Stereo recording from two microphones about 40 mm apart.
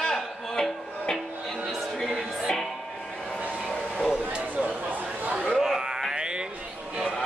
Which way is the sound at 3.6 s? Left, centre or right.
Centre.